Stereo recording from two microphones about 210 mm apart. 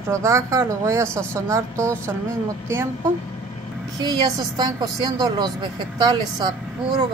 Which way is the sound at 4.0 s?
20° right (ahead or behind).